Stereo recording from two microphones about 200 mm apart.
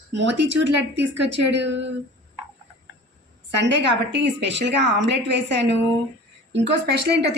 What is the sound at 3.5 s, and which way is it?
A woman's voice, 60° right (ahead or behind).